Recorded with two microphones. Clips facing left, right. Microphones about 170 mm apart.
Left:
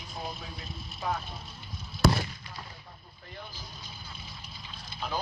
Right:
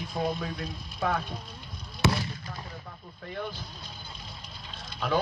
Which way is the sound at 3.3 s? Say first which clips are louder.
Right 10 dB; 60° right (ahead or behind).